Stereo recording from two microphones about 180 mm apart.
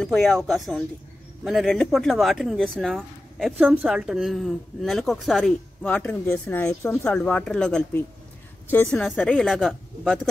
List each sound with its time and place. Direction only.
0.0 s speech: centre (ahead or behind)